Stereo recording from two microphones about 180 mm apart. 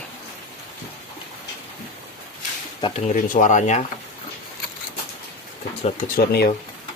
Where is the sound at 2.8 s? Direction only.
35° left (ahead or behind).